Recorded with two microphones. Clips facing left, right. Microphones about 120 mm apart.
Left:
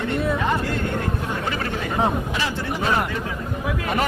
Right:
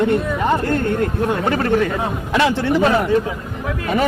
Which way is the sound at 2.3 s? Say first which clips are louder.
Right 10 dB; 75° right (ahead or behind).